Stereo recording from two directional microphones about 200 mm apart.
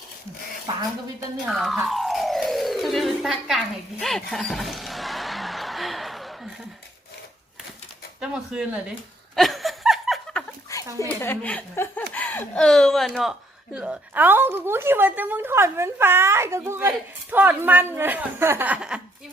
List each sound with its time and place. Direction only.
1.5 s speech: centre (ahead or behind)
4.0 s music: centre (ahead or behind)
8.2 s speech: 5° right (ahead or behind)
9.3 s laughter: centre (ahead or behind)
10.7 s a sound: 15° left (ahead or behind)
11.2 s a woman's voice: 10° left (ahead or behind)